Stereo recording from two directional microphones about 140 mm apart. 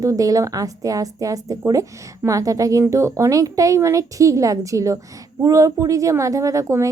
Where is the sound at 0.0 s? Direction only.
25° right (ahead or behind).